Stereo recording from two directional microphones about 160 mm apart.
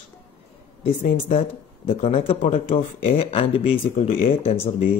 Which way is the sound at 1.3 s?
40° left (ahead or behind).